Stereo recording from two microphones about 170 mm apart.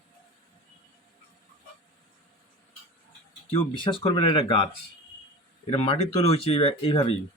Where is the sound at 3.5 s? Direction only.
30° left (ahead or behind).